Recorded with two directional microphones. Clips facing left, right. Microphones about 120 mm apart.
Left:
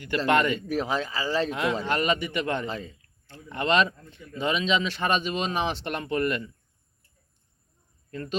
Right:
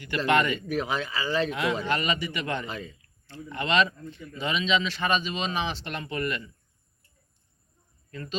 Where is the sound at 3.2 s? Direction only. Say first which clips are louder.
Left 3 dB; 45° left (ahead or behind).